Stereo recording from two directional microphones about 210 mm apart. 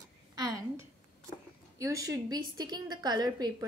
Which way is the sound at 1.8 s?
15° right (ahead or behind).